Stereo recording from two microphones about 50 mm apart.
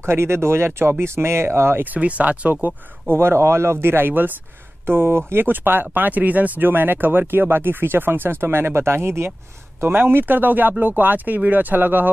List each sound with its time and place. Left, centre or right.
0.0 s speech: right
1.9 s speech: right
2.5 s speech: right
3.2 s speech: right
9.8 s speech: right